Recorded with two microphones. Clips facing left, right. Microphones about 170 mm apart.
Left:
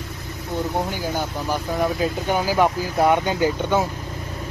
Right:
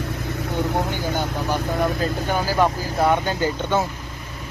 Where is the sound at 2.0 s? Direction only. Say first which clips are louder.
Left 1 dB; 15° left (ahead or behind).